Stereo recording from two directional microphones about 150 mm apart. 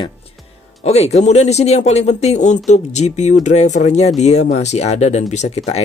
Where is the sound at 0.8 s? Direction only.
45° left (ahead or behind).